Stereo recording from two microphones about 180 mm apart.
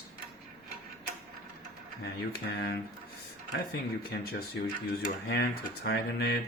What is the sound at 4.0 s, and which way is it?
Speech, 60° left (ahead or behind).